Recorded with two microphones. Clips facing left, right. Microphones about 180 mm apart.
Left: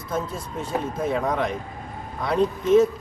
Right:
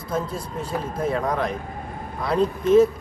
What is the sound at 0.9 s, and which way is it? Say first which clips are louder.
Speech: right 2 dB; 5° left (ahead or behind).